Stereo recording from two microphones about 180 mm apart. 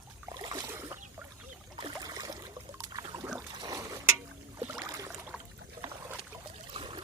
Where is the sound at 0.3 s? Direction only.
25° right (ahead or behind).